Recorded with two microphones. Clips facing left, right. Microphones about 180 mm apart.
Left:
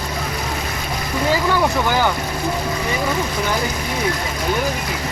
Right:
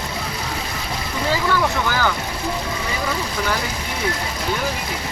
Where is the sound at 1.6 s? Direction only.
20° left (ahead or behind).